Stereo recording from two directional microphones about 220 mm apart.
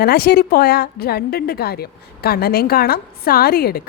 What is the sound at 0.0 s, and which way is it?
A woman's voice, 45° left (ahead or behind).